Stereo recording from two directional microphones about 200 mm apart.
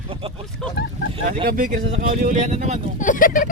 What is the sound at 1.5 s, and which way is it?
Speech, 40° right (ahead or behind).